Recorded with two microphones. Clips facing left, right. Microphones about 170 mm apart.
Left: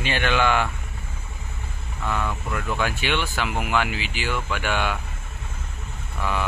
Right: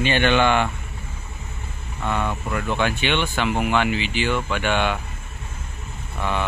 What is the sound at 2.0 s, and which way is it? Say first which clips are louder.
Speech: right 3 dB; 20° right (ahead or behind).